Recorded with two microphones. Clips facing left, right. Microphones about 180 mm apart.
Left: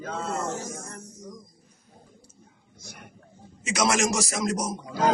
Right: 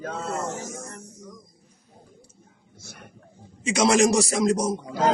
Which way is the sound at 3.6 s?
30° right (ahead or behind).